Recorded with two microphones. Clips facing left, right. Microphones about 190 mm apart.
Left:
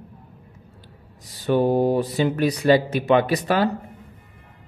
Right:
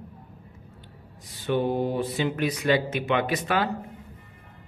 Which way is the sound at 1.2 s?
40° left (ahead or behind).